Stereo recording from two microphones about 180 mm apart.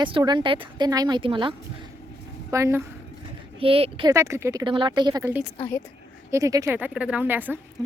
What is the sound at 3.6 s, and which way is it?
Speech, 30° right (ahead or behind).